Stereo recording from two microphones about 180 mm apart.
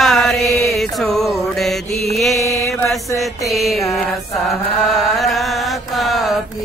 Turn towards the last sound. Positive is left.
turn(degrees=0)  # may be behind; listen again after turning